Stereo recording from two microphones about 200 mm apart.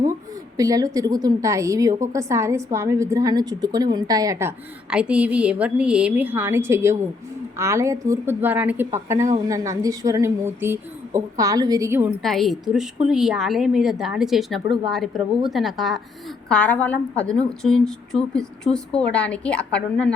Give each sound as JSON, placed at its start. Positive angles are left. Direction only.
{"t": 0.5, "sound": "a woman's voice", "side_deg": -15}
{"t": 12.2, "sound": "a woman's voice", "side_deg": 0}